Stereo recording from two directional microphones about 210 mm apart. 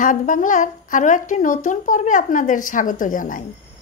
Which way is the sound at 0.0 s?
40° left (ahead or behind).